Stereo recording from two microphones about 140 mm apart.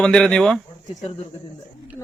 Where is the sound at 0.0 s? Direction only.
5° left (ahead or behind).